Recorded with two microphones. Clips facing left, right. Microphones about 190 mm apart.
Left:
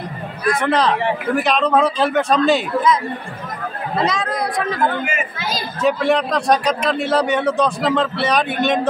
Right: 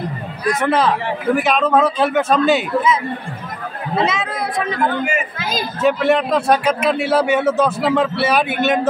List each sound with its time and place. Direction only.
0.6 s a man's voice: 5° right (ahead or behind)